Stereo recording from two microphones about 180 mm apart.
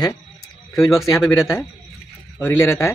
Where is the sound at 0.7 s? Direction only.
20° left (ahead or behind).